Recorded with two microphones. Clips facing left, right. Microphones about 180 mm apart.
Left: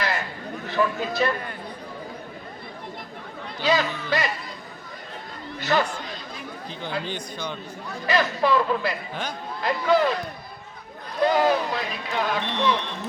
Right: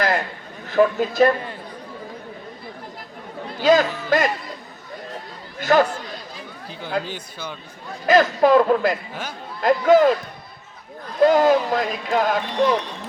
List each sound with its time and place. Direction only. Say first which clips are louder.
0.7 s speech: right 7 dB; 45° right (ahead or behind)
3.6 s speech: right 7 dB; 45° right (ahead or behind)
5.5 s speech: right 6 dB; 45° right (ahead or behind)
7.0 s speech: left 1 dB; 5° right (ahead or behind)
8.0 s speech: right 7 dB; 45° right (ahead or behind)
11.3 s speech: right 4 dB; 45° right (ahead or behind)